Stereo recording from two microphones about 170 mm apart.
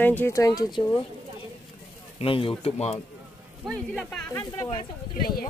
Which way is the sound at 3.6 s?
Centre (ahead or behind).